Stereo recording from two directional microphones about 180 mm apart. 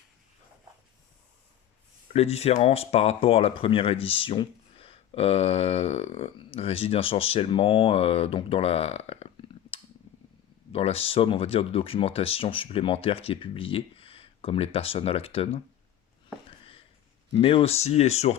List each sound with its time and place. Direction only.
2.1 s speech: 35° left (ahead or behind)
17.3 s speech: 30° left (ahead or behind)